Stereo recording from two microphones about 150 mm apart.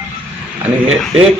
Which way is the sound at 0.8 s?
5° right (ahead or behind).